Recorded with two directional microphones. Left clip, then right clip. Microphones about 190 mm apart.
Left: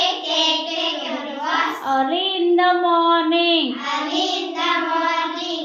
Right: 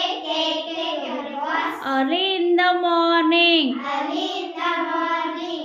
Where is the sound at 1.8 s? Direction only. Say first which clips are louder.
Left 2 dB; 25° right (ahead or behind).